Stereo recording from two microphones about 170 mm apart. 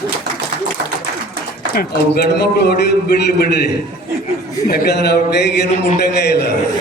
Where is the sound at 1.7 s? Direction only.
70° left (ahead or behind).